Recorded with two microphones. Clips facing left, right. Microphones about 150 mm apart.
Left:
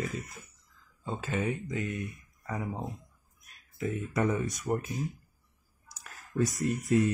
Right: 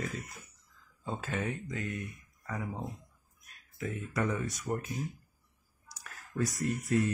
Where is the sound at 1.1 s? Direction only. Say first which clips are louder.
Left 3 dB; 5° left (ahead or behind).